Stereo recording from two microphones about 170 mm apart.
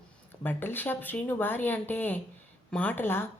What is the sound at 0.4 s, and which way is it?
Speech, 10° left (ahead or behind).